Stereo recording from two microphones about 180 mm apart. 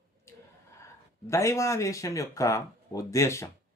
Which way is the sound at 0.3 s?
15° left (ahead or behind).